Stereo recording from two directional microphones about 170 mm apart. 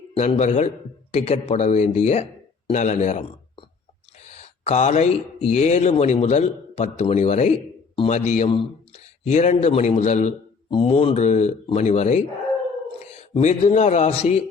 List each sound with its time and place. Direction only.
0.2 s a man's voice: 40° left (ahead or behind)
4.4 s a man's voice: 40° left (ahead or behind)
13.3 s speech: 40° left (ahead or behind)